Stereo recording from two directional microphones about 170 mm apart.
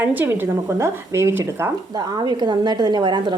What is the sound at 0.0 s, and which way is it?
Speech, 10° right (ahead or behind).